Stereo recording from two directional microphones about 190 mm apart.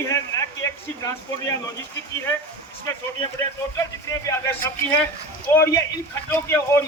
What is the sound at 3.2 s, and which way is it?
Speech, 15° left (ahead or behind).